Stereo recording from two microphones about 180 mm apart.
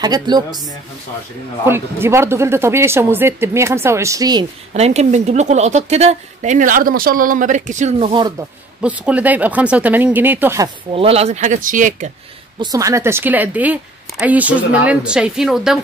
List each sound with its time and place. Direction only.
0.0 s speech: 20° right (ahead or behind)
1.7 s a woman's voice: 15° right (ahead or behind)
4.7 s a woman's voice: 35° right (ahead or behind)
8.1 s speech: 25° right (ahead or behind)
8.8 s a woman's voice: 5° right (ahead or behind)
10.9 s a woman's voice: 30° right (ahead or behind)
12.5 s a woman's voice: 20° right (ahead or behind); by 15.8 s 5° right (ahead or behind)